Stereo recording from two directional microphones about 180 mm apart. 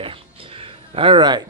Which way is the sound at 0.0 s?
30° right (ahead or behind).